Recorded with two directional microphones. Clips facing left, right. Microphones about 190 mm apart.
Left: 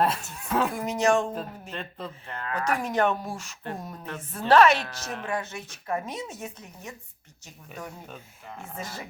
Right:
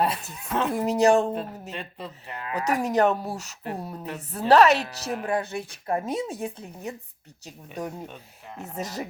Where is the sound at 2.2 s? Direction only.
15° right (ahead or behind).